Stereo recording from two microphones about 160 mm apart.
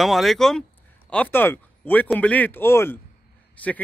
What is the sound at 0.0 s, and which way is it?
A man's voice, centre (ahead or behind).